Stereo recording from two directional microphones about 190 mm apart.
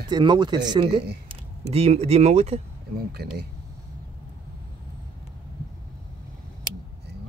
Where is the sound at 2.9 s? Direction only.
55° right (ahead or behind).